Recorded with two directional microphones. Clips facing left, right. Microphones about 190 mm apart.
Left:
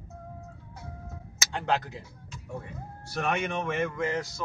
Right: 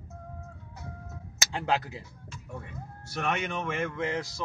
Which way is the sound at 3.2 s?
Centre (ahead or behind).